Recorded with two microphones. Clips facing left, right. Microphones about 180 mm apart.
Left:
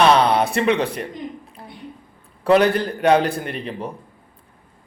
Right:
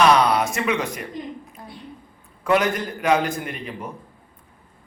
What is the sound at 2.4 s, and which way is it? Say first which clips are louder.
A man's voice: left 5 dB; 35° left (ahead or behind).